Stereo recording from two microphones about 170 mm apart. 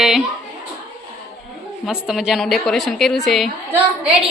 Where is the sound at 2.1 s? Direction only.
5° right (ahead or behind).